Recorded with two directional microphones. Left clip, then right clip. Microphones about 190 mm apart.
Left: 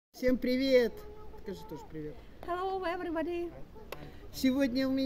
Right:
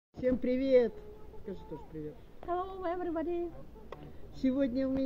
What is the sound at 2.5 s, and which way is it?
Speech, 35° left (ahead or behind).